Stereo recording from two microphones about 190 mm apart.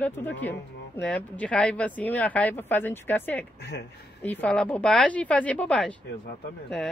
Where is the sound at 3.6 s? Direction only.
60° left (ahead or behind).